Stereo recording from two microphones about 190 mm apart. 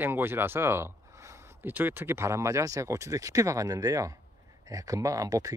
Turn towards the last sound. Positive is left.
turn(degrees=-15)  # may be behind; listen again after turning